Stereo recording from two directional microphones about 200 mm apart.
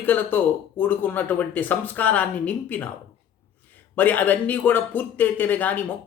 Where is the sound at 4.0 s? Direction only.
10° left (ahead or behind).